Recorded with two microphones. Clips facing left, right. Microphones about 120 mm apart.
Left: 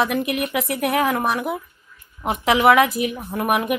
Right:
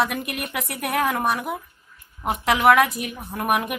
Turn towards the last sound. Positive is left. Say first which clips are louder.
# left 2 dB
turn(degrees=0)  # may be behind; listen again after turning